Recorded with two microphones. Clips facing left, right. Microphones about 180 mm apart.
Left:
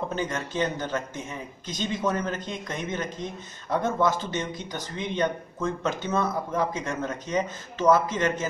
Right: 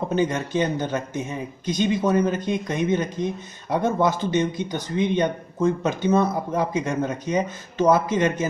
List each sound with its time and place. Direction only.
0.1 s speech: 20° right (ahead or behind)